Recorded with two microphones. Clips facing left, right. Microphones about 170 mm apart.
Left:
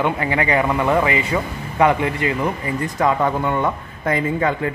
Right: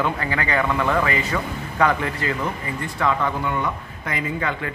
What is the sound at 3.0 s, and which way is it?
Speech, 40° left (ahead or behind).